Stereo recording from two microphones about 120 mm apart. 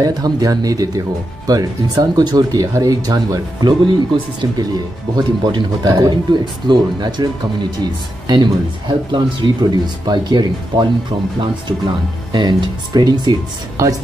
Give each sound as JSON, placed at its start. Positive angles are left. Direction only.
{"t": 0.0, "sound": "speech", "side_deg": -30}
{"t": 8.3, "sound": "speech", "side_deg": -40}
{"t": 12.3, "sound": "speech", "side_deg": -40}